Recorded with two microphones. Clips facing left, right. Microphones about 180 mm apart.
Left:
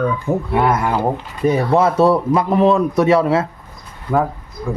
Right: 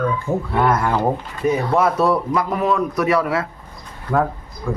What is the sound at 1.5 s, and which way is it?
A man's voice, 30° left (ahead or behind).